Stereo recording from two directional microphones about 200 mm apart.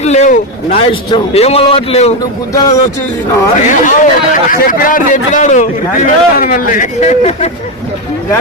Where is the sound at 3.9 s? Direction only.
45° left (ahead or behind).